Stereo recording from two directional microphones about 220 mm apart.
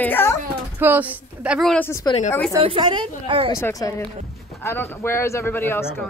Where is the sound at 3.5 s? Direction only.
15° left (ahead or behind).